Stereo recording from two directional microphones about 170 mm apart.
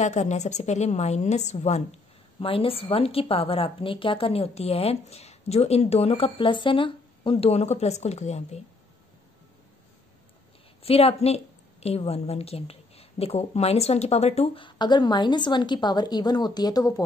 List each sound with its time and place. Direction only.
0.0 s a woman's voice: 45° left (ahead or behind)
10.8 s a woman's voice: 35° left (ahead or behind)